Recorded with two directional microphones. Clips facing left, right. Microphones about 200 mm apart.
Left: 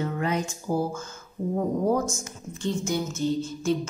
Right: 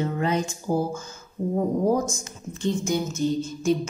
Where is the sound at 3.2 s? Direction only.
15° right (ahead or behind).